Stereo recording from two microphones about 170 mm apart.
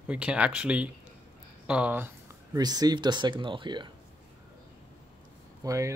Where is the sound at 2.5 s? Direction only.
20° right (ahead or behind).